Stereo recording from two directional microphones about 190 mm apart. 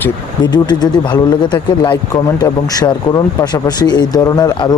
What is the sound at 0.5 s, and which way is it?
Speech, 20° left (ahead or behind).